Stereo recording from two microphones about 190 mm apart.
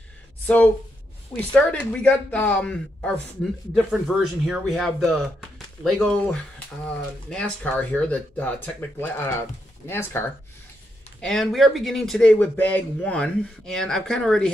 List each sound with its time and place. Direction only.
1.5 s speech: 5° left (ahead or behind)